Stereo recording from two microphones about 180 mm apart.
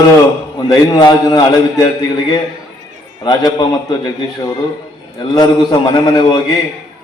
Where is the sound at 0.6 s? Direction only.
25° left (ahead or behind).